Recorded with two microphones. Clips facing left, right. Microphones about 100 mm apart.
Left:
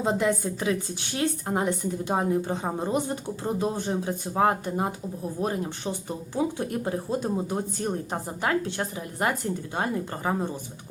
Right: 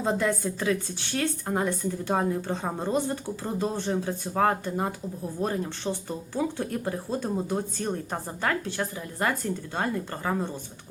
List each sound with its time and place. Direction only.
0.0 s a woman's voice: 15° left (ahead or behind)